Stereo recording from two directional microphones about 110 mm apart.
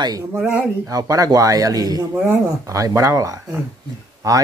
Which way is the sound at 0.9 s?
30° right (ahead or behind).